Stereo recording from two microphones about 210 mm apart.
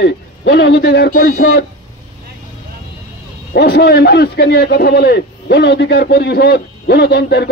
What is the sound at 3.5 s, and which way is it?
A man's voice, 50° left (ahead or behind).